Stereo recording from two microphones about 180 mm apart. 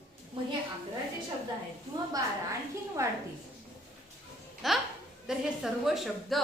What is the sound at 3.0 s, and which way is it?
Speech, 15° right (ahead or behind).